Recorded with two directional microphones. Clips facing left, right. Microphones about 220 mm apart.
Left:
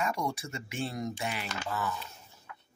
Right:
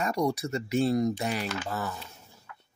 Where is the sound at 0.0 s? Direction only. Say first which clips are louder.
Right 5 dB; 40° right (ahead or behind).